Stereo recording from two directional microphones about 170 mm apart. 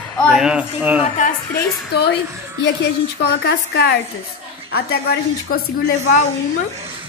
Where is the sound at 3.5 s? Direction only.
75° left (ahead or behind).